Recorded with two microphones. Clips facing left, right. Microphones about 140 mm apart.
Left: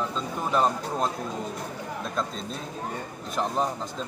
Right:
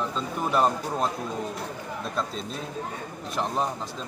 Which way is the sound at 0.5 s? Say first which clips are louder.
Even; centre (ahead or behind).